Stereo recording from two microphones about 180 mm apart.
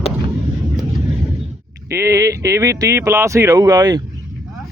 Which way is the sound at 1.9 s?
15° right (ahead or behind).